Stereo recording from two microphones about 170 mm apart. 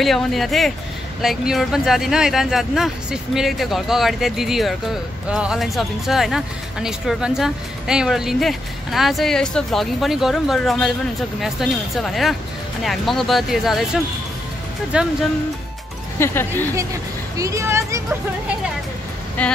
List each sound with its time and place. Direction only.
0.0 s speech: centre (ahead or behind)
16.2 s speech: 15° left (ahead or behind)
16.7 s speech: 20° right (ahead or behind)
19.4 s speech: 10° left (ahead or behind)